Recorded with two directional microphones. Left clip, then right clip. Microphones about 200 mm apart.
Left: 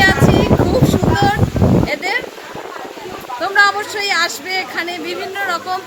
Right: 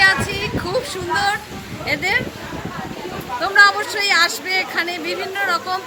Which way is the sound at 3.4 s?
20° left (ahead or behind).